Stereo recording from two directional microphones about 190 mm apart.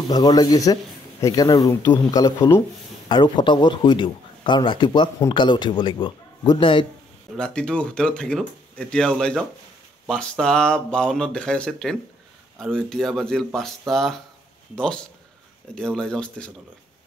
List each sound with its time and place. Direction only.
0.1 s speech: 20° left (ahead or behind)
7.3 s speech: 5° left (ahead or behind)
15.7 s speech: 5° left (ahead or behind)